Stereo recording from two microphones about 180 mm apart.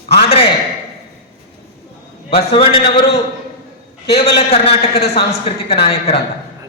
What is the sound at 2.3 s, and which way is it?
Speech, 30° left (ahead or behind).